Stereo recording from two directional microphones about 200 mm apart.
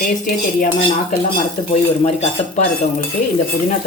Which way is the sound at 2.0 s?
35° left (ahead or behind).